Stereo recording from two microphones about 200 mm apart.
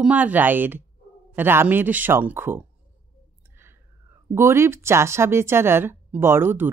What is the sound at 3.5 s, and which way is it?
Whispering, 10° right (ahead or behind).